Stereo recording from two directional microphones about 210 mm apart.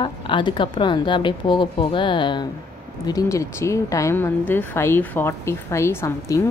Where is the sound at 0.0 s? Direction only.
20° left (ahead or behind).